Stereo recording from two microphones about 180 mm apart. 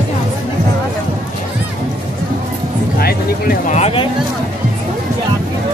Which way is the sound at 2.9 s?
55° left (ahead or behind).